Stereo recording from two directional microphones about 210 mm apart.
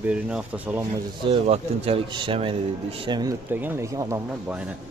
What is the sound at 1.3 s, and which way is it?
A man's voice, 30° right (ahead or behind).